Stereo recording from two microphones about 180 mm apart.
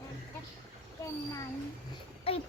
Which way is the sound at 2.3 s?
30° left (ahead or behind).